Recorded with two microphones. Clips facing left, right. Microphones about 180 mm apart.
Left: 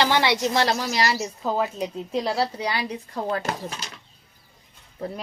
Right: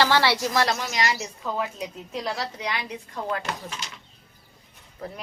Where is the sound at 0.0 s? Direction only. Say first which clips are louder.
Left 1 dB; 20° left (ahead or behind); by 3.8 s 35° left (ahead or behind).